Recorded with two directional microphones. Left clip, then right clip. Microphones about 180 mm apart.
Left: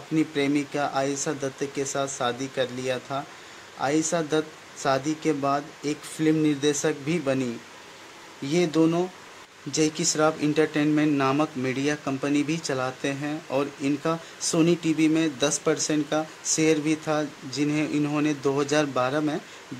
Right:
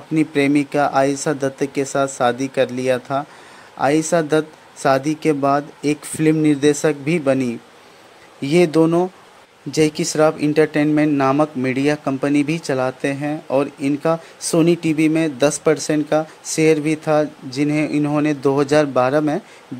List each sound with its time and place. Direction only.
0.1 s speech: 35° right (ahead or behind)
8.4 s speech: 35° right (ahead or behind)